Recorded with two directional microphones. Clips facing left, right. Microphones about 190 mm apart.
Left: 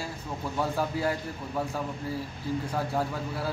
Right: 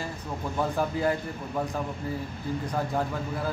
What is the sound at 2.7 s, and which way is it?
Speech, 5° left (ahead or behind).